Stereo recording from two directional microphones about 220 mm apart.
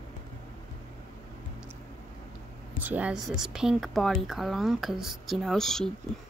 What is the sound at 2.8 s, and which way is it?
Speech, 5° right (ahead or behind).